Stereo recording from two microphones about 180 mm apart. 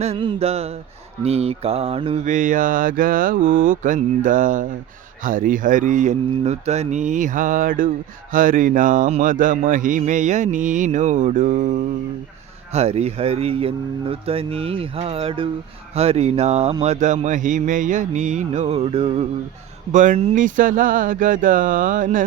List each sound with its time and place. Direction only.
0.0 s speech: 30° right (ahead or behind); by 22.2 s 50° right (ahead or behind)